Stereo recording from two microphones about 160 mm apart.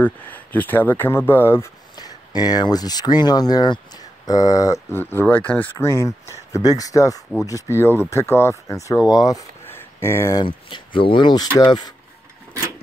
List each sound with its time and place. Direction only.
0.0 s speech: 10° left (ahead or behind)
2.0 s speech: 25° left (ahead or behind)
10.4 s speech: 30° left (ahead or behind)